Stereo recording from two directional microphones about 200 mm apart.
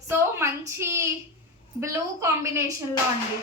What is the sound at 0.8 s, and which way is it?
A woman's voice, 15° right (ahead or behind).